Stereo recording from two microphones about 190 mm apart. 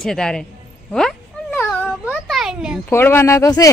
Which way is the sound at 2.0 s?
Centre (ahead or behind).